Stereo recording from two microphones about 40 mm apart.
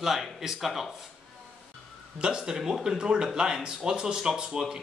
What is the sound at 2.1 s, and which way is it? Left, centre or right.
Speech, right.